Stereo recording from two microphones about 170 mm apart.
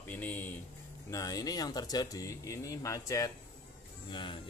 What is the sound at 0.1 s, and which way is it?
Speech, 10° left (ahead or behind).